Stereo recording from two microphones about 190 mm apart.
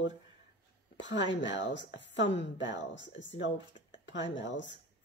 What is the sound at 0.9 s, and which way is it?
A woman's voice, 75° left (ahead or behind).